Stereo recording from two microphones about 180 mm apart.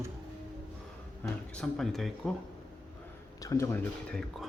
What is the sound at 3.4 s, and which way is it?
Speech, 15° left (ahead or behind).